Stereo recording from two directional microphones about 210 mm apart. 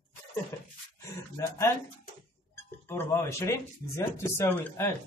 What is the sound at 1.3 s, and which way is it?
Speech, 15° left (ahead or behind).